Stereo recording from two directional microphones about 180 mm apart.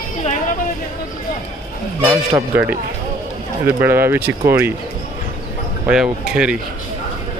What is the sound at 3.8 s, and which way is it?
Speech, 10° right (ahead or behind).